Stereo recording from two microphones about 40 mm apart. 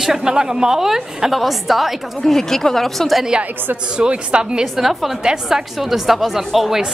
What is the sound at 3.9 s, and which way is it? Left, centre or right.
Speech, right.